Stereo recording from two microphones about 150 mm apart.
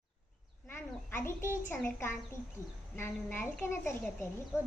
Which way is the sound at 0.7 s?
15° left (ahead or behind).